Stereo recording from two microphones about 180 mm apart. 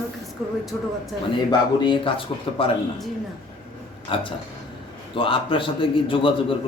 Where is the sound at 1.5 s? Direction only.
25° left (ahead or behind).